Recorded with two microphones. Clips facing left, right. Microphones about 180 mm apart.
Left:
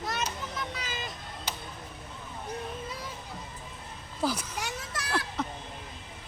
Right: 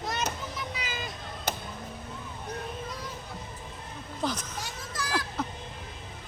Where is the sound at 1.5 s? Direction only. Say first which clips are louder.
Right 6 dB; 50° right (ahead or behind).